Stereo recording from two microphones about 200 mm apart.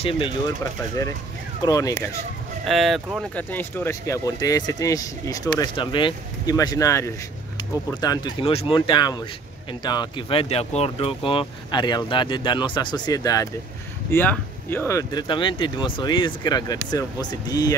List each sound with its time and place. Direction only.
1.6 s speech: 20° left (ahead or behind)
2.6 s speech: centre (ahead or behind); by 17.7 s 20° left (ahead or behind)